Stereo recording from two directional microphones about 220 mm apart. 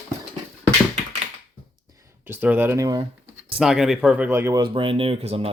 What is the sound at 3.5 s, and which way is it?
Speech, 5° right (ahead or behind).